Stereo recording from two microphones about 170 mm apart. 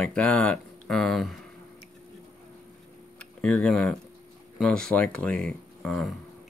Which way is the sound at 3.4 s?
5° left (ahead or behind).